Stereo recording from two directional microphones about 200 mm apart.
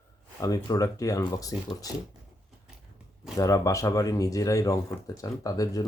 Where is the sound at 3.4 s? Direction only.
15° left (ahead or behind).